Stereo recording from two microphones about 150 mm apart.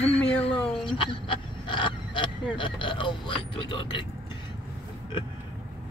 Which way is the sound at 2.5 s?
35° left (ahead or behind).